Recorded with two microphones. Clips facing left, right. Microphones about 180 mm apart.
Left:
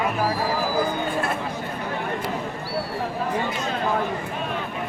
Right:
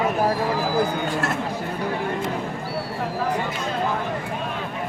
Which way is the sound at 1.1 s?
80° right.